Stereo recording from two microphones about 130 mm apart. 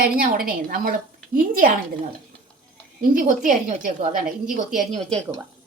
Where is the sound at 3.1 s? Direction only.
90° right.